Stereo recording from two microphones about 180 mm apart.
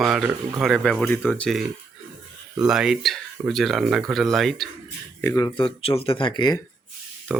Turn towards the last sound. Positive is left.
turn(degrees=25)  # may be behind; listen again after turning